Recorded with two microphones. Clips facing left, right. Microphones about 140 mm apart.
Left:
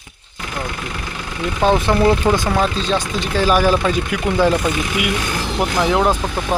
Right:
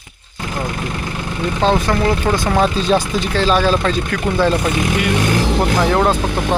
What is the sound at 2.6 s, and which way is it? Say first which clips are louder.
Speech: right 4 dB; 5° right (ahead or behind).